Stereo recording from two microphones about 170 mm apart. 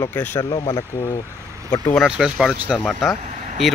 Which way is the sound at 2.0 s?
5° right (ahead or behind).